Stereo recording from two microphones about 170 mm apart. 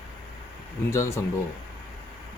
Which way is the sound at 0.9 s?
15° left (ahead or behind).